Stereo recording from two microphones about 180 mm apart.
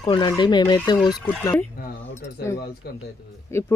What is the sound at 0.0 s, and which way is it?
Speech, 25° left (ahead or behind).